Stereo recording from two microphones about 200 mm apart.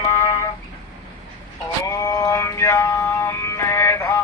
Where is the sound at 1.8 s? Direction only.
15° left (ahead or behind).